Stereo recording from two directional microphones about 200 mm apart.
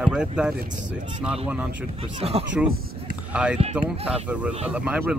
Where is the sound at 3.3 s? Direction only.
5° right (ahead or behind).